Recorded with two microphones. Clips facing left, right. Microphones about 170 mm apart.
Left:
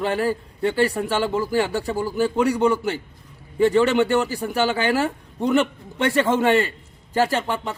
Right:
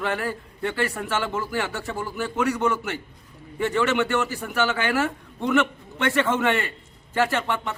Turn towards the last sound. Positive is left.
turn(degrees=35)  # may be behind; listen again after turning